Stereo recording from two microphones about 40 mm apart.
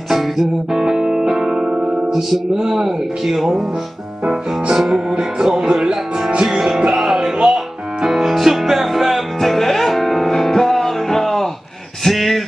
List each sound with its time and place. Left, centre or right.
0.4 s music: centre
1.7 s music: right
2.0 s music: centre
2.6 s speech: centre
6.9 s music: centre
12.0 s a sound: centre